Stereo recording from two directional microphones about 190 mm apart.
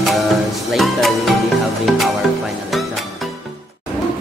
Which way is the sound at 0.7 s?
Centre (ahead or behind).